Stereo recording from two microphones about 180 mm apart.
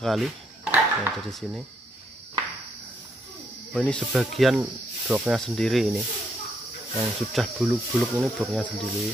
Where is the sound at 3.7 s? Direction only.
5° left (ahead or behind).